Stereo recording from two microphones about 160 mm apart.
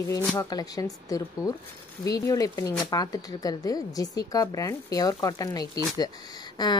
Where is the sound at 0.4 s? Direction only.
20° left (ahead or behind).